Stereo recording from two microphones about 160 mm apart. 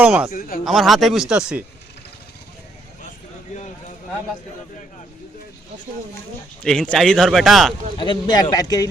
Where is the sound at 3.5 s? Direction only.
50° left (ahead or behind).